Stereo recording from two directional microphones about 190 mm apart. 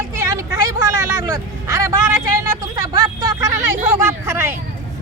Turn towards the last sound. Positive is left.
turn(degrees=-15)  # may be behind; listen again after turning